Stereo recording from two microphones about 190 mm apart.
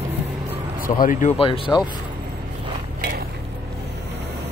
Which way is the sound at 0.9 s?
45° left (ahead or behind).